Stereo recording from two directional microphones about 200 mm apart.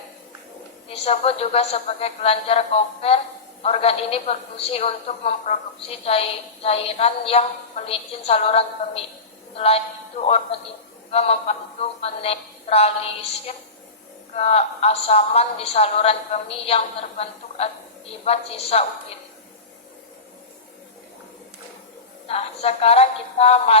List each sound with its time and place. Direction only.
0.9 s a woman's voice: 30° left (ahead or behind)
22.3 s a woman's voice: 30° left (ahead or behind)